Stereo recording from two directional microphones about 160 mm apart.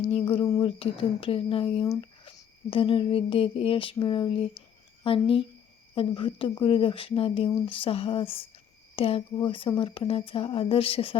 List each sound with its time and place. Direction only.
0.1 s speech: 35° left (ahead or behind)